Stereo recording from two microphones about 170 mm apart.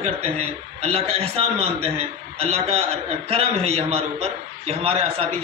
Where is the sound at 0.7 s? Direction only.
35° right (ahead or behind).